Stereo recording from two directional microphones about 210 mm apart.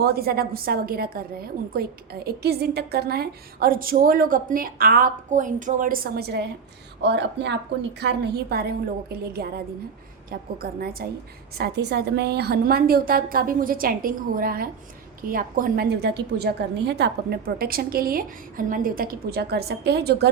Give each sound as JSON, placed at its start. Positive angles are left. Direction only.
{"t": 0.0, "sound": "a woman's voice", "side_deg": -50}